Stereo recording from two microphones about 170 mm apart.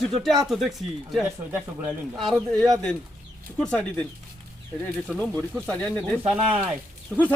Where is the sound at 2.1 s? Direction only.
Centre (ahead or behind).